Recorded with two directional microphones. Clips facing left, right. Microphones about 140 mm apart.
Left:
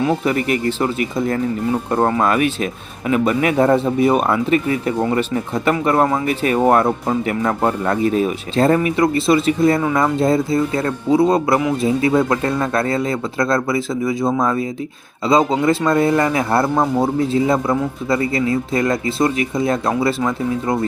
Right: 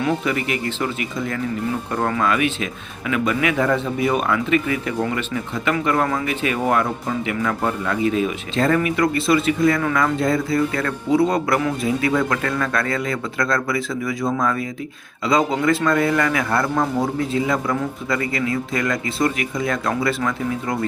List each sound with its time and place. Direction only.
0.3 s a man's voice: 40° left (ahead or behind); by 20.7 s 25° left (ahead or behind)